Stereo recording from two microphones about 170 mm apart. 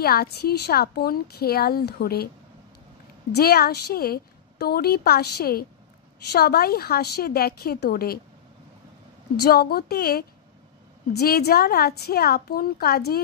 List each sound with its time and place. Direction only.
0.0 s a woman's voice: 65° left (ahead or behind)
3.3 s a woman's voice: 65° left (ahead or behind)
9.4 s a woman's voice: 65° left (ahead or behind)